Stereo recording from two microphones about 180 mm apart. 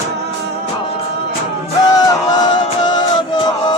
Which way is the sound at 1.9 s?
20° left (ahead or behind).